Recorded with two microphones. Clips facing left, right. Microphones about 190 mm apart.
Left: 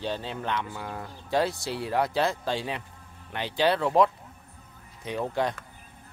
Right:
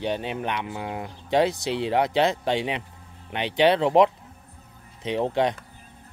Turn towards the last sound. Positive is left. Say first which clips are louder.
# right 5 dB
turn(degrees=-25)  # may be behind; listen again after turning